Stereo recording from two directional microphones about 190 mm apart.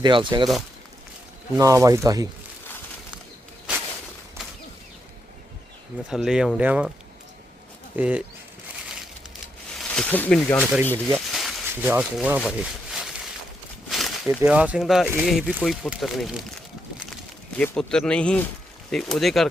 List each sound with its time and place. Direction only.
0.0 s speech: 25° right (ahead or behind)
1.5 s speech: 15° right (ahead or behind)
6.1 s speech: 5° right (ahead or behind)
7.9 s speech: 10° right (ahead or behind)
9.7 s speech: 5° left (ahead or behind)
11.6 s speech: 10° right (ahead or behind)